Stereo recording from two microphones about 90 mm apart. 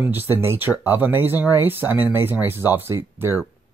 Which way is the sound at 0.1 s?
25° right (ahead or behind).